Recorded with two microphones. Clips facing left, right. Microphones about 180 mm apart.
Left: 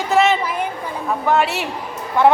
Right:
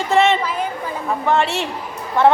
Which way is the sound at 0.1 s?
Centre (ahead or behind).